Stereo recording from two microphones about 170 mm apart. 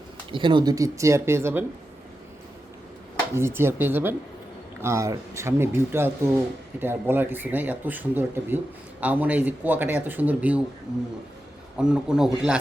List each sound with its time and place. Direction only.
0.3 s speech: 30° right (ahead or behind)
3.3 s speech: 15° right (ahead or behind)
11.8 s a man's voice: 5° right (ahead or behind)